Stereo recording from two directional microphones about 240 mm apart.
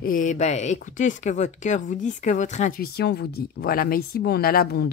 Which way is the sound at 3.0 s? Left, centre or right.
Left.